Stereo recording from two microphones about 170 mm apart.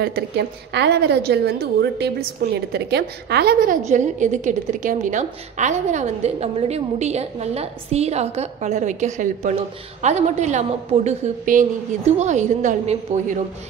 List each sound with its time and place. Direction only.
0.0 s a woman's voice: 75° right (ahead or behind); by 13.4 s 45° right (ahead or behind)